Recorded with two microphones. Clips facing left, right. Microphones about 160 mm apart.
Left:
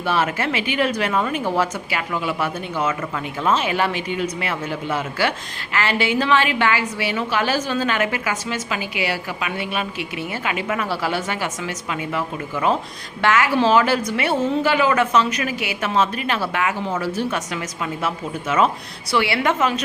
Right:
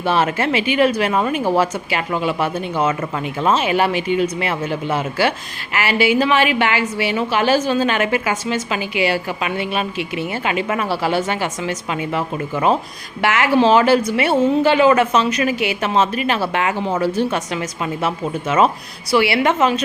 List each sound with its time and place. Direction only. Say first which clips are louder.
0.0 s a woman's voice: right 3 dB; 20° right (ahead or behind)
16.6 s a woman's voice: right 4 dB; 30° right (ahead or behind)